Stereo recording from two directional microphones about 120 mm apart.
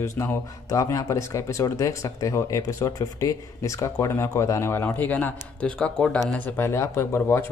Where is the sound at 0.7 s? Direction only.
30° left (ahead or behind).